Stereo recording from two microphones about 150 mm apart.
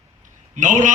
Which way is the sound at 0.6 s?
55° right (ahead or behind).